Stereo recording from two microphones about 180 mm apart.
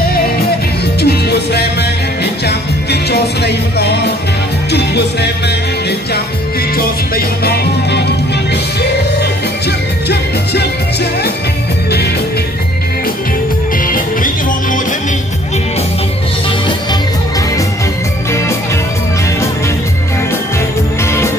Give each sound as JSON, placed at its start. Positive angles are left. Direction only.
{"t": 1.0, "sound": "music", "side_deg": 65}
{"t": 6.8, "sound": "music", "side_deg": 60}
{"t": 9.2, "sound": "music", "side_deg": 65}
{"t": 13.8, "sound": "music", "side_deg": 50}
{"t": 21.0, "sound": "music", "side_deg": 15}